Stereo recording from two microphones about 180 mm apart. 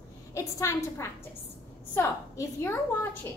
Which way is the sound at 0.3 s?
15° left (ahead or behind).